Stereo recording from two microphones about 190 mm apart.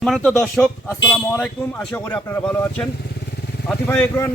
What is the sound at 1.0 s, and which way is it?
Speech, 10° left (ahead or behind).